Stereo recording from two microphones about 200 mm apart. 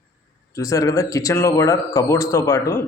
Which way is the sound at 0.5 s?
15° left (ahead or behind).